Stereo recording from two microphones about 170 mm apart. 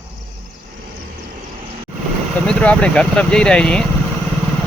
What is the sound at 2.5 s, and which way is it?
Speech, 5° left (ahead or behind).